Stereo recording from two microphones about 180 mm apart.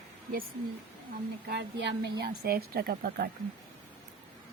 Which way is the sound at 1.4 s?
70° right (ahead or behind).